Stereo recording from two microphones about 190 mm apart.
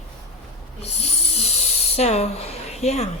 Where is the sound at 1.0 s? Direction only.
35° left (ahead or behind).